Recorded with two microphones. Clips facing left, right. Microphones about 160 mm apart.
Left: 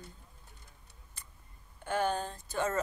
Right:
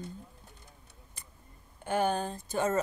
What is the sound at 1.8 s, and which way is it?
Speech, 15° right (ahead or behind).